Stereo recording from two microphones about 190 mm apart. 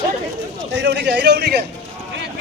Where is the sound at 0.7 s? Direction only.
70° right (ahead or behind).